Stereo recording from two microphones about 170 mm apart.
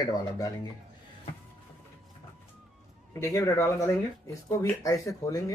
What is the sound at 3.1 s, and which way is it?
A man's voice, 20° left (ahead or behind).